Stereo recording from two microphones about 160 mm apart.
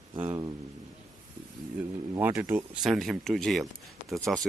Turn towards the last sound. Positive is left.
turn(degrees=0)  # may be behind; listen again after turning